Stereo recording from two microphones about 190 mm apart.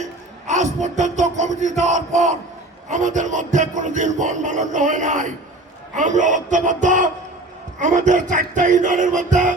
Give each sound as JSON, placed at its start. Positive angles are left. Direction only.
{"t": 0.0, "sound": "music", "side_deg": -40}